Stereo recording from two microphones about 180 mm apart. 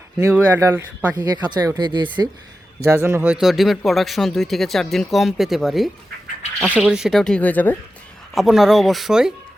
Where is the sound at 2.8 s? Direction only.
15° right (ahead or behind); by 7.8 s 10° left (ahead or behind).